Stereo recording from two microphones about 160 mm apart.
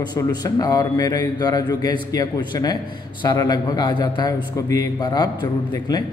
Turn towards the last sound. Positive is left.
turn(degrees=25)  # may be behind; listen again after turning